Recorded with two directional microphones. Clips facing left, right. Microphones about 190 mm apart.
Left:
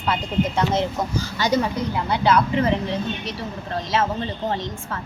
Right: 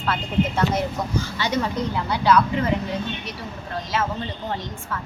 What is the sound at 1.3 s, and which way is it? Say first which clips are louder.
Speech: left 5 dB; 40° left (ahead or behind).